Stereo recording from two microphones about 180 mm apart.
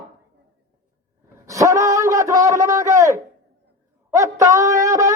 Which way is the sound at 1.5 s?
20° right (ahead or behind).